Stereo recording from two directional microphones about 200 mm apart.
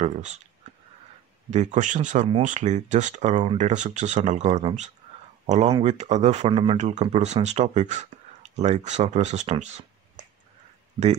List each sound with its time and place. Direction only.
0.0 s speech: 35° right (ahead or behind)
1.5 s speech: 35° right (ahead or behind)